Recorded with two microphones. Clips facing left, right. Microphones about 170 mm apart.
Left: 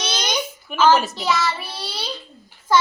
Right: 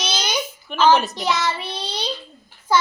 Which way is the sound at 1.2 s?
20° right (ahead or behind).